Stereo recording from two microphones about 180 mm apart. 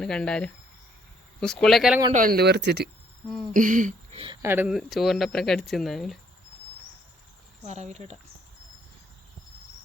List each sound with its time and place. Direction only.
0.0 s speech: 5° left (ahead or behind)
2.1 s speech: 55° right (ahead or behind)
3.5 s a sound: 45° right (ahead or behind)
4.1 s a sound: 30° right (ahead or behind)
4.4 s speech: 10° right (ahead or behind)
7.6 s speech: 40° right (ahead or behind)